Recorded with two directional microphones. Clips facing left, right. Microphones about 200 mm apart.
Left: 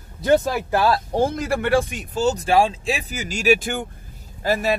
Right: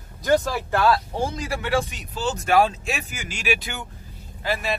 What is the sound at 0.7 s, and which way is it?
Speech, 25° left (ahead or behind).